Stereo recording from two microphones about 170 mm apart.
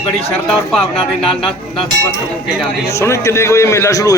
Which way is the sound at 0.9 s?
35° left (ahead or behind).